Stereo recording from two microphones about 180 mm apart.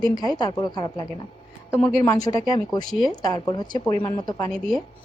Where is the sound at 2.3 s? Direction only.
20° left (ahead or behind).